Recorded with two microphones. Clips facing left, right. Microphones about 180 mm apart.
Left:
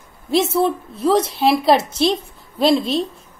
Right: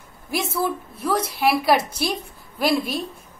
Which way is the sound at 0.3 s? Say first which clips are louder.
Left 7 dB; 25° left (ahead or behind).